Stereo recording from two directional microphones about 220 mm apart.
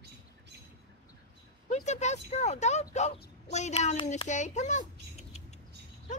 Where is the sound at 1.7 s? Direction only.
30° left (ahead or behind).